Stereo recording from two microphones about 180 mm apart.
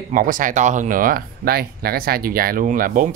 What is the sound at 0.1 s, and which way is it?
Speech, 45° right (ahead or behind).